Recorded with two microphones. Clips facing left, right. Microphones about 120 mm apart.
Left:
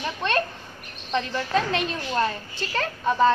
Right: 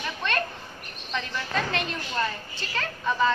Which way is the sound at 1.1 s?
40° left (ahead or behind).